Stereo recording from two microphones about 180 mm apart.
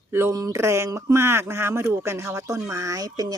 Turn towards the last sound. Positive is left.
turn(degrees=-20)  # may be behind; listen again after turning